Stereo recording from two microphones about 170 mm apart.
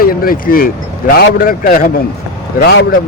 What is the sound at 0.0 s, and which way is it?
Speech, 60° left (ahead or behind).